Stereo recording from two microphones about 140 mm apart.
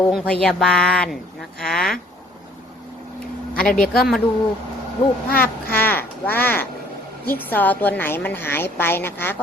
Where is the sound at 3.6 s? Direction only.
90° left.